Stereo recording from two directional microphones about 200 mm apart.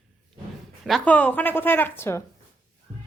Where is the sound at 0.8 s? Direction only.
5° left (ahead or behind).